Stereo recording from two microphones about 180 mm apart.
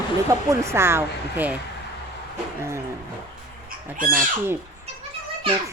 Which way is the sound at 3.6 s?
50° right (ahead or behind).